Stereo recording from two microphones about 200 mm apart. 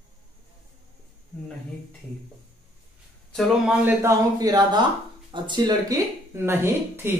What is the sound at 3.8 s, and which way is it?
A man's voice, 15° right (ahead or behind).